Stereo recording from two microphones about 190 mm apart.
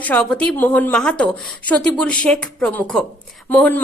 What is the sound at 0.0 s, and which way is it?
A woman's voice, 5° left (ahead or behind).